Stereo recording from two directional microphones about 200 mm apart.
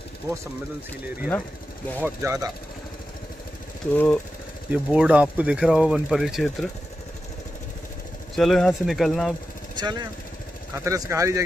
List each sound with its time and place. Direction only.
1.0 s speech: 10° right (ahead or behind)
3.9 s speech: 10° left (ahead or behind)
4.6 s speech: 5° right (ahead or behind)
8.4 s speech: centre (ahead or behind)
9.8 s speech: 20° right (ahead or behind)